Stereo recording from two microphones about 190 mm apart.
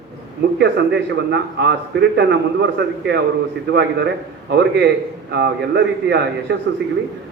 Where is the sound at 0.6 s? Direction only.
65° right (ahead or behind).